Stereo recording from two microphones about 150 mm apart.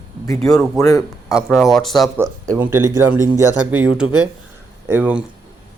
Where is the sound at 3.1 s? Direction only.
20° left (ahead or behind).